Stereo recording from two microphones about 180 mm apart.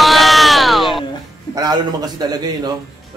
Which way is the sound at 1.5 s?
20° right (ahead or behind).